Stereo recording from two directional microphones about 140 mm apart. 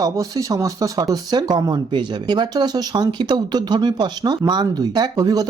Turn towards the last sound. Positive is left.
turn(degrees=-30)  # may be behind; listen again after turning